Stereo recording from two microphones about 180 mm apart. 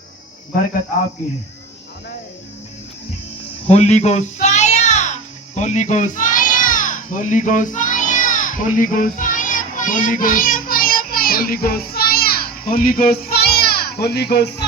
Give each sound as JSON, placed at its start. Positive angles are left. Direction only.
{"t": 3.7, "sound": "music", "side_deg": 35}